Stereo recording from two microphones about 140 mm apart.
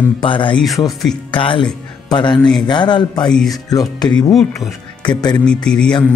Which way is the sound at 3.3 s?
5° left (ahead or behind).